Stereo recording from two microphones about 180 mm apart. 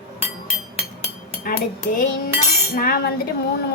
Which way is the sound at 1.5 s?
50° left (ahead or behind).